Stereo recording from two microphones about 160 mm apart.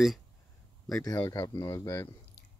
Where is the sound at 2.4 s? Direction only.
90° left.